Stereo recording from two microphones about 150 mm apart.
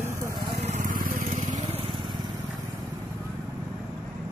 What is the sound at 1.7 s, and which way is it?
Lawn mower, 35° right (ahead or behind).